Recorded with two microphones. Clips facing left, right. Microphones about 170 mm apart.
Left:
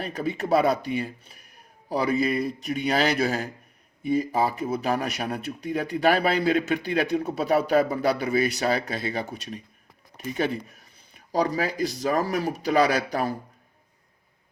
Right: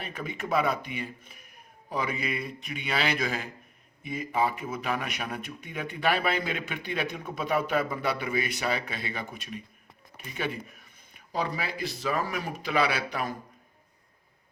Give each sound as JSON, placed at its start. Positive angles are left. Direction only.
{"t": 0.0, "sound": "a man's voice", "side_deg": 35}